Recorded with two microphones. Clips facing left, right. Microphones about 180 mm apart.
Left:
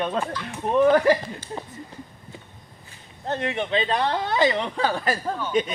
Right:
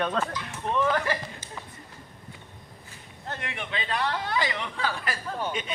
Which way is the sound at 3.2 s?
25° left (ahead or behind).